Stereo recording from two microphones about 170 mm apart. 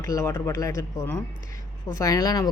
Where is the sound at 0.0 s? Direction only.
20° left (ahead or behind).